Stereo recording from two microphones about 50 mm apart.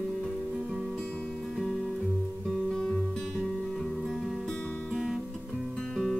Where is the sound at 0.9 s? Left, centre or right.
Left.